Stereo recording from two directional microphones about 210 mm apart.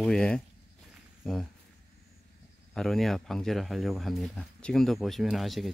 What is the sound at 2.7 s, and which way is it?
Speech, centre (ahead or behind).